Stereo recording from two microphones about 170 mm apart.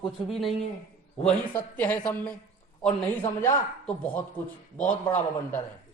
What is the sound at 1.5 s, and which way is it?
Speech, 10° left (ahead or behind).